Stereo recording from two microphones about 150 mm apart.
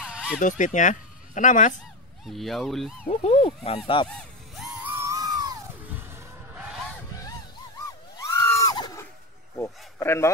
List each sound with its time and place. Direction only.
0.0 s fowl: 5° right (ahead or behind)
0.4 s speech: 55° left (ahead or behind)
2.2 s speech: centre (ahead or behind)
3.1 s speech: 45° left (ahead or behind)
4.8 s screaming: 20° right (ahead or behind)
6.5 s skidding: 10° right (ahead or behind)
8.2 s a sound: 25° left (ahead or behind)
9.6 s speech: 15° left (ahead or behind)